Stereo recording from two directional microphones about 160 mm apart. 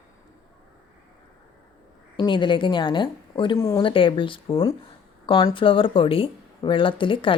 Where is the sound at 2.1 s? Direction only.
30° left (ahead or behind).